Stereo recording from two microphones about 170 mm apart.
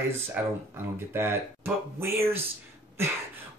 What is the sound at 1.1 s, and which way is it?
Speech, 15° right (ahead or behind).